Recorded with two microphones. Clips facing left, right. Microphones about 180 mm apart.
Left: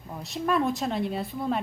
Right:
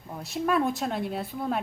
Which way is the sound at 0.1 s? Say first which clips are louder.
Even; centre (ahead or behind).